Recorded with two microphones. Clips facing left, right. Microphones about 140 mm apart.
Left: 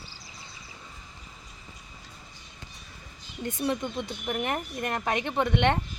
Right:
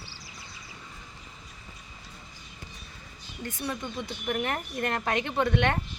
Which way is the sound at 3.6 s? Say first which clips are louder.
Left 5 dB; 15° left (ahead or behind).